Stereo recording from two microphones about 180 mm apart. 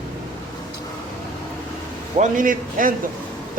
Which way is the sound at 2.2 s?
45° right (ahead or behind).